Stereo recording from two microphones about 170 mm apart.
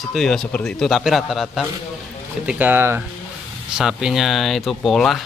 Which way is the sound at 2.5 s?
10° right (ahead or behind).